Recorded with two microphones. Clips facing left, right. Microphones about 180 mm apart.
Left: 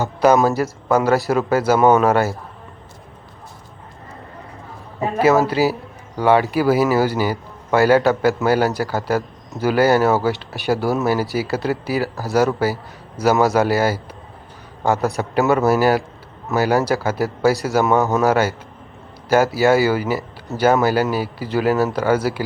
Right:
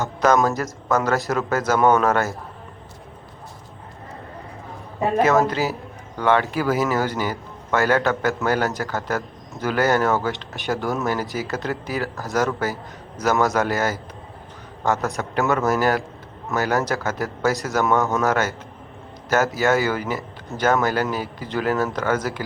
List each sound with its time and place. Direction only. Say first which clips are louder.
0.0 s a man's voice: left 4 dB; 10° left (ahead or behind)
5.2 s a man's voice: left 5 dB; 10° left (ahead or behind)
14.9 s a man's voice: left 5 dB; 35° left (ahead or behind)
15.4 s a man's voice: left 5 dB; 10° left (ahead or behind)
19.5 s a man's voice: left 5 dB; 10° left (ahead or behind)